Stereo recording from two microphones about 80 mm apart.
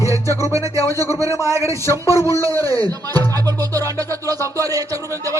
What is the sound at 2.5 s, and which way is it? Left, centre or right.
Music, right.